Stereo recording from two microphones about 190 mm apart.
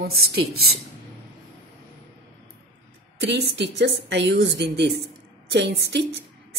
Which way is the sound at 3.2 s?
65° right (ahead or behind).